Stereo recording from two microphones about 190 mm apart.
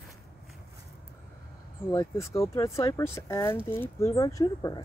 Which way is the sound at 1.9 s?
15° left (ahead or behind).